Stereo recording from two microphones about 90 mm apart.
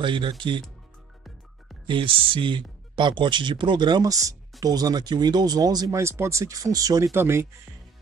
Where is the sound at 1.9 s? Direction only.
70° right (ahead or behind); by 5.9 s 45° right (ahead or behind).